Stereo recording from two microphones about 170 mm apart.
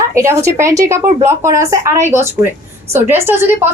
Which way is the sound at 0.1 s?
15° right (ahead or behind).